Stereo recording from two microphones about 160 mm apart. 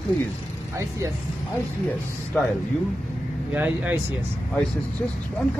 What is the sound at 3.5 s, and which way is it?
Speech, 10° right (ahead or behind).